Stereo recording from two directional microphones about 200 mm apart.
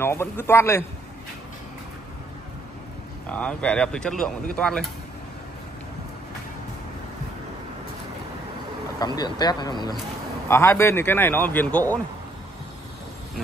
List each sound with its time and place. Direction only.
0.0 s a man's voice: 10° left (ahead or behind)
3.3 s speech: 5° left (ahead or behind)
9.0 s a man's voice: 20° left (ahead or behind)